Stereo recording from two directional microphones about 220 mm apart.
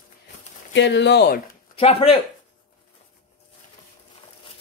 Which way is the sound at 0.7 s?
55° left (ahead or behind).